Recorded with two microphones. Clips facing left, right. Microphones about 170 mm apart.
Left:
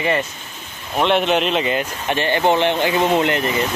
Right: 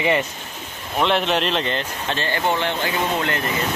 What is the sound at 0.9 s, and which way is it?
Speech, centre (ahead or behind).